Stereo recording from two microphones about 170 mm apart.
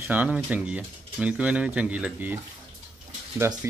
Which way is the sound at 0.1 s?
10° right (ahead or behind).